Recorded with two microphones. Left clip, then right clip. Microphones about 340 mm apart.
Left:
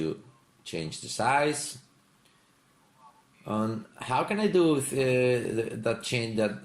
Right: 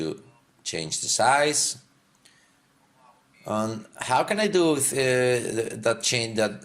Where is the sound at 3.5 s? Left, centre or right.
Right.